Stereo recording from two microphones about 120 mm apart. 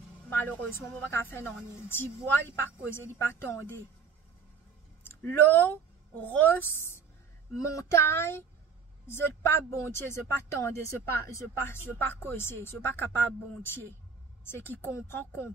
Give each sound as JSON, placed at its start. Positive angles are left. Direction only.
{"t": 0.3, "sound": "speech", "side_deg": 15}
{"t": 5.0, "sound": "speech", "side_deg": 20}